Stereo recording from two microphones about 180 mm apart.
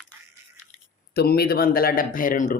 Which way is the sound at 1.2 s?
60° left (ahead or behind).